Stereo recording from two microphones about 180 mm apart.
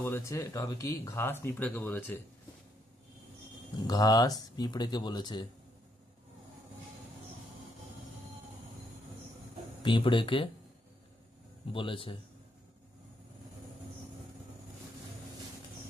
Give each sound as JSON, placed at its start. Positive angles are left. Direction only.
{"t": 0.0, "sound": "speech", "side_deg": 15}
{"t": 3.8, "sound": "speech", "side_deg": 20}
{"t": 9.8, "sound": "speech", "side_deg": 30}
{"t": 11.7, "sound": "speech", "side_deg": 30}